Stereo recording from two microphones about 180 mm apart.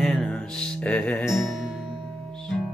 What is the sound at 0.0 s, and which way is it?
Music, 5° left (ahead or behind).